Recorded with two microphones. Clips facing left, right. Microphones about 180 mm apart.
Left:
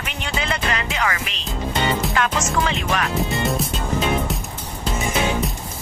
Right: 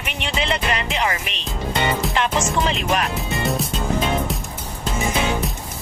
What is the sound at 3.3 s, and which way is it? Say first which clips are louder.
Music: even; centre (ahead or behind).